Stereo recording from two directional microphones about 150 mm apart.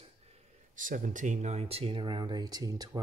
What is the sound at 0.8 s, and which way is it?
Speech, 60° right (ahead or behind).